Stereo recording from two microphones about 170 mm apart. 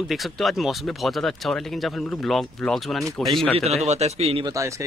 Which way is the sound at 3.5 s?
40° right (ahead or behind).